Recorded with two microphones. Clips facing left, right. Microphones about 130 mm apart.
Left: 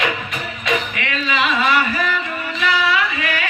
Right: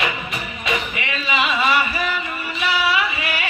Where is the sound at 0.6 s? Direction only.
5° right (ahead or behind).